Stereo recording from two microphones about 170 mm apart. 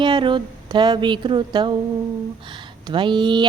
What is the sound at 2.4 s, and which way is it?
Speech, 30° right (ahead or behind).